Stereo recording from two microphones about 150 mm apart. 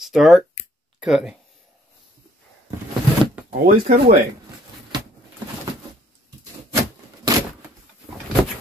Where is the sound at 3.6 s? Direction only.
85° right.